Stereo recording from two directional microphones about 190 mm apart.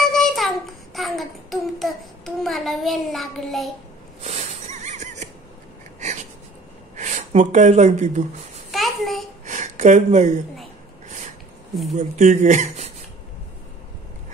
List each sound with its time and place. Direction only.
0.0 s child singing: centre (ahead or behind)
4.2 s neigh: 40° right (ahead or behind)
5.9 s a sound: 40° right (ahead or behind)
7.0 s speech: 40° right (ahead or behind)
8.7 s babbling: centre (ahead or behind)
9.5 s speech: 40° right (ahead or behind)
12.0 s speech: 40° right (ahead or behind)